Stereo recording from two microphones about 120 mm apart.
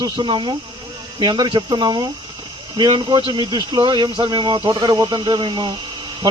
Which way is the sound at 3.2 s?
40° right (ahead or behind).